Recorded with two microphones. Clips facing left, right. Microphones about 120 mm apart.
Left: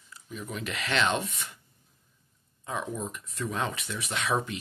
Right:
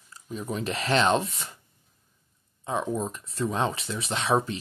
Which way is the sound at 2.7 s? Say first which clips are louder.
Right 5 dB; 30° right (ahead or behind).